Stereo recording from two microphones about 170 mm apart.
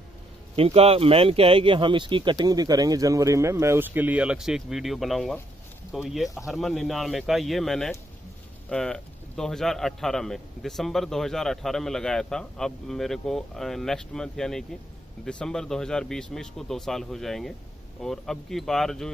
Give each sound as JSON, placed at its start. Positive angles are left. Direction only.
{"t": 0.6, "sound": "a man's voice", "side_deg": -35}